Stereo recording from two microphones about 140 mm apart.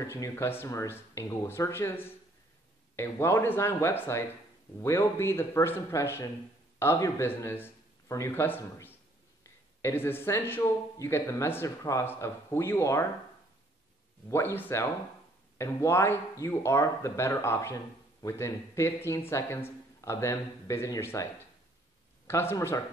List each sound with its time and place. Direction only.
0.0 s a man's voice: 20° left (ahead or behind)
14.3 s a man's voice: 15° left (ahead or behind)
22.3 s speech: 20° left (ahead or behind)